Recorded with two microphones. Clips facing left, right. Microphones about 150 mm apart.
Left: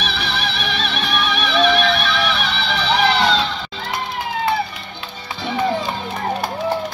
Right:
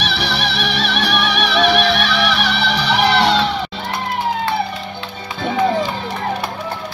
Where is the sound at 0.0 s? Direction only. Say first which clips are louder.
Right 3 dB; 75° right (ahead or behind).